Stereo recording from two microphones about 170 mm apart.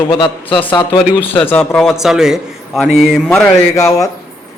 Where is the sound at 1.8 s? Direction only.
Centre (ahead or behind).